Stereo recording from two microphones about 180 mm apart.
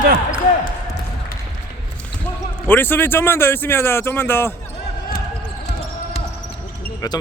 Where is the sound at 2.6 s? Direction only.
10° left (ahead or behind).